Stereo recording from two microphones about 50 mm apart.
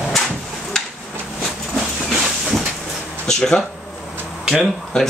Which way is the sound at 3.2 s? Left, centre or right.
Centre.